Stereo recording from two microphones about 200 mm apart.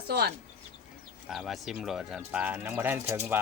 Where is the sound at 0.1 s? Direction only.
50° right (ahead or behind).